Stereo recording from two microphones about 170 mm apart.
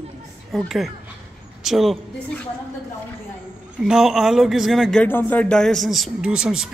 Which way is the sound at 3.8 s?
5° right (ahead or behind).